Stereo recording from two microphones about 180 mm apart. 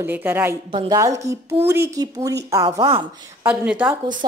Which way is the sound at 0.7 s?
30° right (ahead or behind).